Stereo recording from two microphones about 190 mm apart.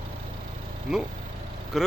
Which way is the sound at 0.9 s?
Centre (ahead or behind).